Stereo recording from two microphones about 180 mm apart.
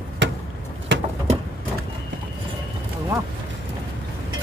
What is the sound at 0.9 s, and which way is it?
Bird, 80° right.